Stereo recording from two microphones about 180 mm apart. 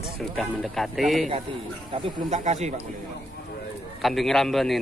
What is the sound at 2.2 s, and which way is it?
Speech, 40° right (ahead or behind).